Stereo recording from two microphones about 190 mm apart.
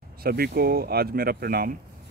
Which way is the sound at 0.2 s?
55° right (ahead or behind).